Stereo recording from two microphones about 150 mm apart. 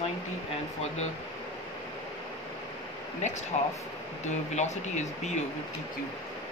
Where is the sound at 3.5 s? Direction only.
50° left (ahead or behind).